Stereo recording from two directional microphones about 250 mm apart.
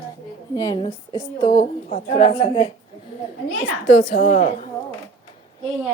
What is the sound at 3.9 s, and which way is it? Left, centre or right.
Speech, left.